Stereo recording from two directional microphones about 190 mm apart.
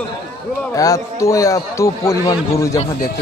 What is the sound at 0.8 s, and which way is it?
A man's voice, 15° left (ahead or behind).